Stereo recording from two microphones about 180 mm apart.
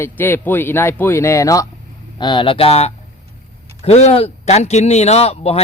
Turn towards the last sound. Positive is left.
turn(degrees=35)  # may be behind; listen again after turning